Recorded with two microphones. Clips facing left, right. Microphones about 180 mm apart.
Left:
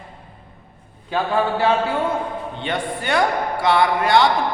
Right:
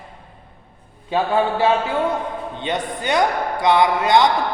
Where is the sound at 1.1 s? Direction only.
20° right (ahead or behind).